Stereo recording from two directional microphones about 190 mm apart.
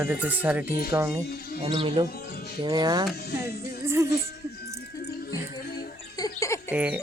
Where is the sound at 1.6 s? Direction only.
30° right (ahead or behind).